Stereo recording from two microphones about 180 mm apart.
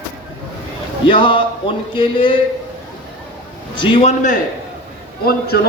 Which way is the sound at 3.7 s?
25° left (ahead or behind).